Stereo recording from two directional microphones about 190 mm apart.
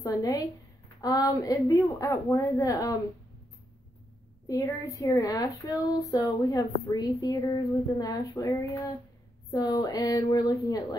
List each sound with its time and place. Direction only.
0.0 s a woman's voice: 20° left (ahead or behind)
4.5 s a woman's voice: 20° left (ahead or behind)